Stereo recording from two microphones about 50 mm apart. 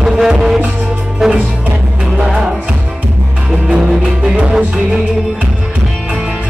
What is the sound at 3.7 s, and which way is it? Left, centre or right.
Music, centre.